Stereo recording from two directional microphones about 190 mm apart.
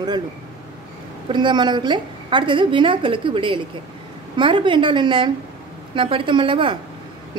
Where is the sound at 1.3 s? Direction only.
25° right (ahead or behind).